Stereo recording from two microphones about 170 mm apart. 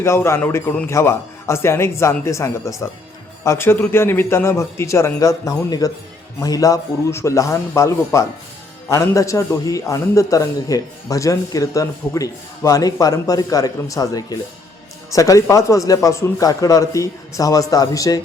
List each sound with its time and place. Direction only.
0.0 s a man's voice: 15° left (ahead or behind)